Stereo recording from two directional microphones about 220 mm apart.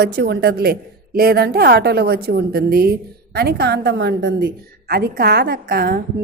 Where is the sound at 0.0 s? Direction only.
50° right (ahead or behind).